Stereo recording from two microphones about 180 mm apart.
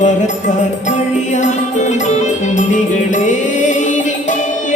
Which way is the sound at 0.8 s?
45° left (ahead or behind).